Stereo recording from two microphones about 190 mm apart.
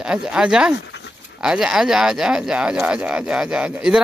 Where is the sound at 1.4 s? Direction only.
5° right (ahead or behind).